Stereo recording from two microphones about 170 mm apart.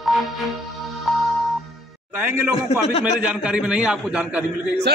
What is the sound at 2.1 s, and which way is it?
A man's voice, 15° right (ahead or behind).